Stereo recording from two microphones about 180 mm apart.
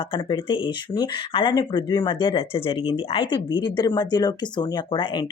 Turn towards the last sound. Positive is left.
turn(degrees=25)  # may be behind; listen again after turning